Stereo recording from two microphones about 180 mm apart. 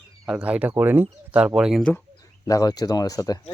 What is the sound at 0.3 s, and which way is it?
Speech, 5° right (ahead or behind).